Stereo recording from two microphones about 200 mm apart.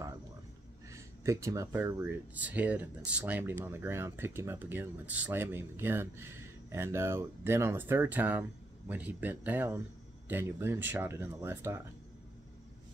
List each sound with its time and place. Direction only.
0.8 s speech: 15° right (ahead or behind)